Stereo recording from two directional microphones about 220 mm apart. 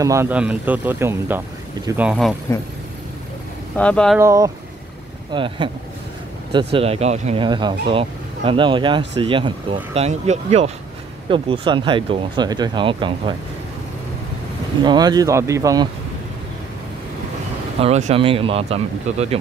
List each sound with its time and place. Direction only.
0.0 s speech: 15° right (ahead or behind)
3.7 s speech: 5° left (ahead or behind)
4.2 s speech: 15° right (ahead or behind)
6.7 s speech: 25° right (ahead or behind)
14.8 s speech: 20° right (ahead or behind)
17.7 s speech: 30° right (ahead or behind)